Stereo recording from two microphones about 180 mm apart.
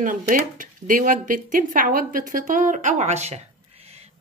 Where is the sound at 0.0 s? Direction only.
45° right (ahead or behind).